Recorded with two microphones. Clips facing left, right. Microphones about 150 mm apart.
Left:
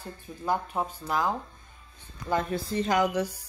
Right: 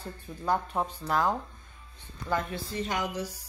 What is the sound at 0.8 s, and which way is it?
Speech, 10° left (ahead or behind).